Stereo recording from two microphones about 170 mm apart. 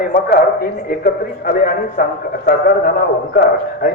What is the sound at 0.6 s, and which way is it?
Speech, 60° left (ahead or behind).